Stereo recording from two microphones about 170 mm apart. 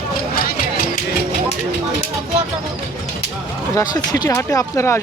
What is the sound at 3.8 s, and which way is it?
Speech, 20° left (ahead or behind).